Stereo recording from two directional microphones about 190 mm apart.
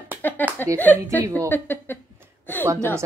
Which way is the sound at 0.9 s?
15° right (ahead or behind).